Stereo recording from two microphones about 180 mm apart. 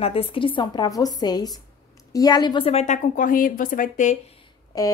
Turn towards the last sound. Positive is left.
turn(degrees=20)  # may be behind; listen again after turning